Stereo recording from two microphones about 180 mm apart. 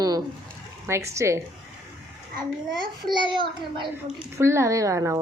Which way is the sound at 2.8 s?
25° right (ahead or behind).